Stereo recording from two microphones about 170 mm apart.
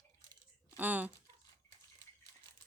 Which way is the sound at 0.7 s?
10° right (ahead or behind).